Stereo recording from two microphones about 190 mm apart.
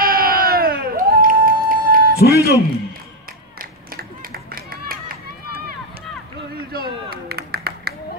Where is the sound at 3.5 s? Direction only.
50° right (ahead or behind).